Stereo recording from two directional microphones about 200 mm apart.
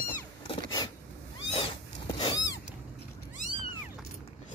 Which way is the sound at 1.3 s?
25° left (ahead or behind).